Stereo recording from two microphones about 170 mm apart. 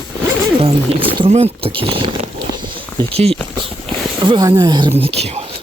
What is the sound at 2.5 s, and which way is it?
Walk, 30° right (ahead or behind).